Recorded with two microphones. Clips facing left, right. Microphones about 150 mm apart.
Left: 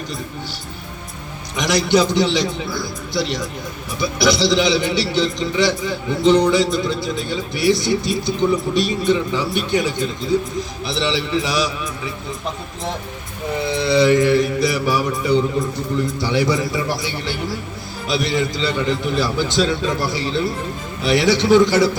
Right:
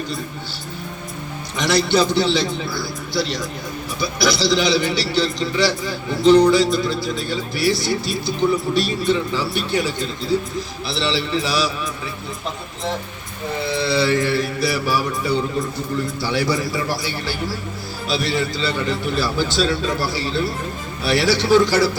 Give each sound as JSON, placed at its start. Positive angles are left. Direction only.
{"t": 1.5, "sound": "a man's voice", "side_deg": 15}
{"t": 13.7, "sound": "a man's voice", "side_deg": 20}